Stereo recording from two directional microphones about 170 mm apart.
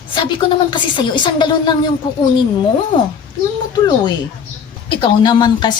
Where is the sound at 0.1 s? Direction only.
25° left (ahead or behind).